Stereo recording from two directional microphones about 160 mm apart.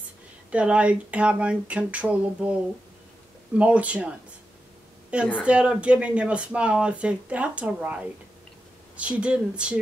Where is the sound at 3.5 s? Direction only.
10° right (ahead or behind).